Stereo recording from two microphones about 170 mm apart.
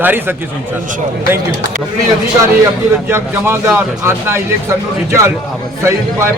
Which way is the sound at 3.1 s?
15° right (ahead or behind).